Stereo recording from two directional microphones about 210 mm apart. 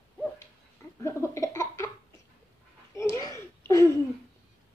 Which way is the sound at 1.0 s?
15° left (ahead or behind).